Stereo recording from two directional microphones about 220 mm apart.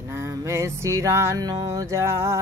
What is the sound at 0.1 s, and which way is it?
Music, 15° right (ahead or behind).